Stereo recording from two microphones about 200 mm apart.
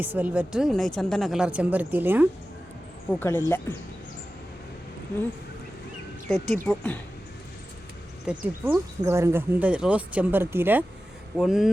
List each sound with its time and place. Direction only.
0.0 s speech: 10° right (ahead or behind)
3.1 s speech: 10° left (ahead or behind)
6.3 s speech: centre (ahead or behind)
8.3 s speech: 10° right (ahead or behind)